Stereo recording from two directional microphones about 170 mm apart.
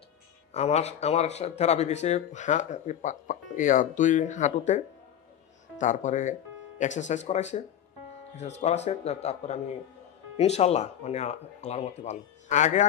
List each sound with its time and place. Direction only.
0.5 s speech: 40° left (ahead or behind)